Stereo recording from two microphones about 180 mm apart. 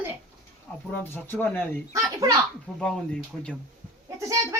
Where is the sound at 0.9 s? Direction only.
10° left (ahead or behind).